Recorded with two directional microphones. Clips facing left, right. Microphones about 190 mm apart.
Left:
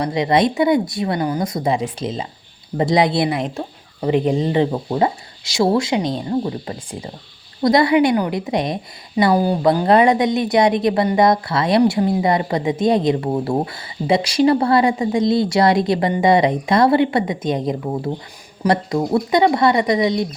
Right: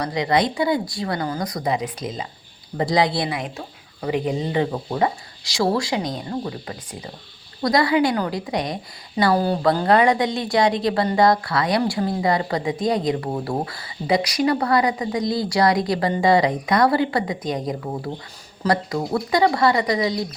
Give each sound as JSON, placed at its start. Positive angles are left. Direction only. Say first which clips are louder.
{"t": 0.0, "sound": "a woman's voice", "louder": "left 4 dB", "side_deg": 25}